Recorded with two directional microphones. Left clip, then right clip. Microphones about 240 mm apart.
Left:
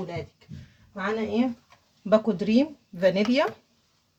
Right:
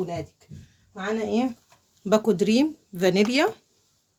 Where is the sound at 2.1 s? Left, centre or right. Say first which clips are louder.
Right 1 dB; right.